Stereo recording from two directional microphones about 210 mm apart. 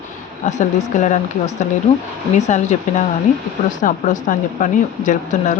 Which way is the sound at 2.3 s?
35° left (ahead or behind).